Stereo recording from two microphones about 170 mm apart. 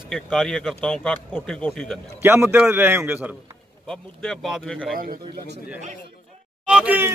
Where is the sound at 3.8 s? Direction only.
Centre (ahead or behind).